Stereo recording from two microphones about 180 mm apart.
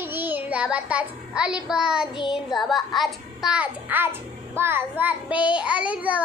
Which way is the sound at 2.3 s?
Centre (ahead or behind).